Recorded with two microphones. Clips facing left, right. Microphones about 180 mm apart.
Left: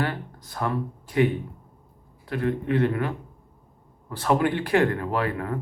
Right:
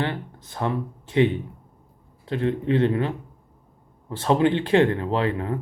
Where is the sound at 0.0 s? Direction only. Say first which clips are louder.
Right 1 dB; 20° right (ahead or behind).